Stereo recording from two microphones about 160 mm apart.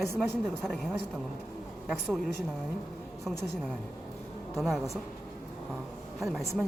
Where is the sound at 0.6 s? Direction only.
Centre (ahead or behind).